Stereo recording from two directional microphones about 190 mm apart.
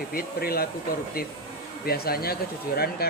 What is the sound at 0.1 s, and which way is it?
Speech, 50° left (ahead or behind).